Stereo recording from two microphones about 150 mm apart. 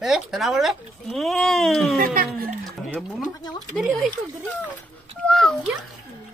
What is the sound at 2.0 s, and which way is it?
Speech, 70° right (ahead or behind).